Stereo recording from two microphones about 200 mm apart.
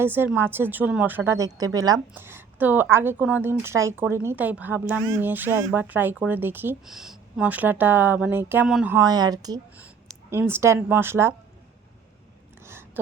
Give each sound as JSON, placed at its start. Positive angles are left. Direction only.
{"t": 0.0, "sound": "speech", "side_deg": -10}
{"t": 9.0, "sound": "speech", "side_deg": -20}
{"t": 9.7, "sound": "speech", "side_deg": -5}